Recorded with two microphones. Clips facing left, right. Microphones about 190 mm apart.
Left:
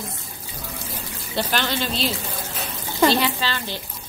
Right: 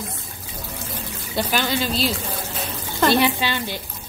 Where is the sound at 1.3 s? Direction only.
10° right (ahead or behind).